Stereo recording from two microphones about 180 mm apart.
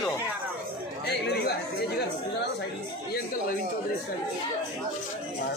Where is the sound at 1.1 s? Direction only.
60° left (ahead or behind).